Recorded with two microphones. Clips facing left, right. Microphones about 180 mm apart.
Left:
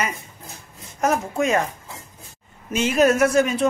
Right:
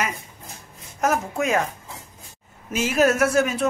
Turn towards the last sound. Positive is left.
turn(degrees=0)  # may be behind; listen again after turning